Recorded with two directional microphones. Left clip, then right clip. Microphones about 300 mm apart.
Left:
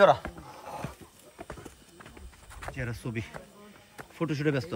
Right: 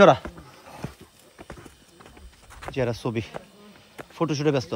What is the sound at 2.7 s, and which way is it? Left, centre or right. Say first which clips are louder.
A man's voice: right 11 dB; centre.